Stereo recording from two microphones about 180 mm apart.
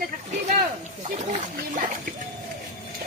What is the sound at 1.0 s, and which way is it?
Speech, 40° right (ahead or behind).